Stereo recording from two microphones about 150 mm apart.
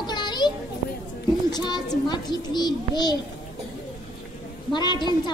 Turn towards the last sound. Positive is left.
turn(degrees=30)  # may be behind; listen again after turning